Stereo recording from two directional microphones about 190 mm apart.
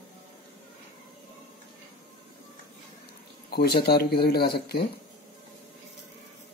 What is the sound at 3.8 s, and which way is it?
Speech, 55° left (ahead or behind).